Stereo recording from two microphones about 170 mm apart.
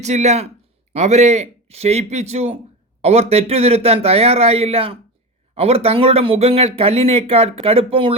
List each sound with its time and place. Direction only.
0.0 s speech: 40° right (ahead or behind)